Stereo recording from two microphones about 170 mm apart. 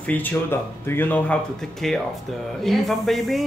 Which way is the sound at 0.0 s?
10° left (ahead or behind).